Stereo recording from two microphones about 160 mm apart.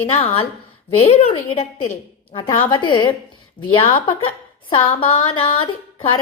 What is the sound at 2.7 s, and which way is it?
A woman's voice, 30° left (ahead or behind).